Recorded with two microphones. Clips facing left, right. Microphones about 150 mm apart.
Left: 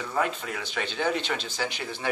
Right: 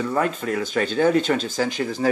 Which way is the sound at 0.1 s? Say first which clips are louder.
Right 6 dB; 45° right (ahead or behind).